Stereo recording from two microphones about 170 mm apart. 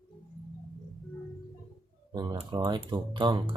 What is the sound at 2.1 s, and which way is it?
Speech, 25° right (ahead or behind).